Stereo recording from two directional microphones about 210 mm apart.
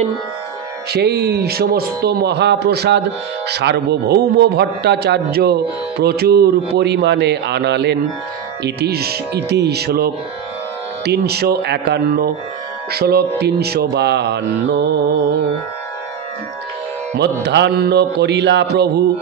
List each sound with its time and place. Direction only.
0.9 s a man's voice: 50° right (ahead or behind)
17.2 s a man's voice: 55° right (ahead or behind)